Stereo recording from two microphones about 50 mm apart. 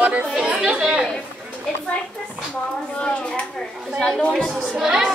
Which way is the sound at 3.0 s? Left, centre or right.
Left.